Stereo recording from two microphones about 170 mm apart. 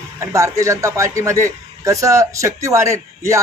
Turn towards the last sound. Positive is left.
turn(degrees=-15)  # may be behind; listen again after turning